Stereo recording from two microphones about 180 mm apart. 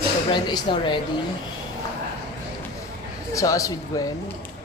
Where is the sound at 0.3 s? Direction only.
25° left (ahead or behind).